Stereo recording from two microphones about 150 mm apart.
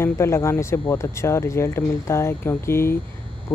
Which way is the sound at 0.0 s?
15° left (ahead or behind).